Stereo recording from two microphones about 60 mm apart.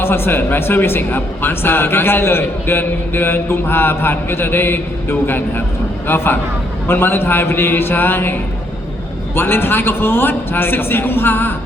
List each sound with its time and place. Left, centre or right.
0.0 s a man's voice: left